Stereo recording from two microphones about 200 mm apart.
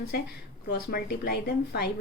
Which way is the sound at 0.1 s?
50° left (ahead or behind).